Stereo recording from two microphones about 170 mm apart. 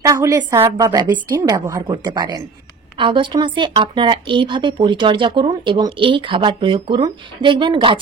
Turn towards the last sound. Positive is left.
turn(degrees=-30)  # may be behind; listen again after turning